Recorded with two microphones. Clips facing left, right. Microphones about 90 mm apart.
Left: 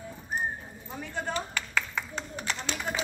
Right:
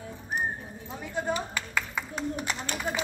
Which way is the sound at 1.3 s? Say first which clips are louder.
Right 3 dB; 10° right (ahead or behind).